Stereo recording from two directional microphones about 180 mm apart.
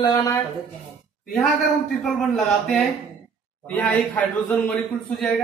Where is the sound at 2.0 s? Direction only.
Centre (ahead or behind).